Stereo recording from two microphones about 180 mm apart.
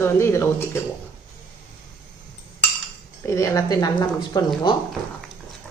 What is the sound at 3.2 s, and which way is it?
Speech, 15° left (ahead or behind).